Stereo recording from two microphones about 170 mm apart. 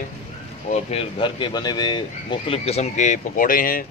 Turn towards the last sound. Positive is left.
turn(degrees=55)  # may be behind; listen again after turning